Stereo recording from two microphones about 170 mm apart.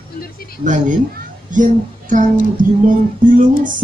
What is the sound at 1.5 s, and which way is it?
Speech, 50° right (ahead or behind).